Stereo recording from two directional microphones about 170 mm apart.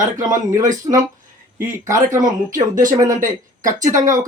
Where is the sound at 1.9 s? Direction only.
50° right (ahead or behind).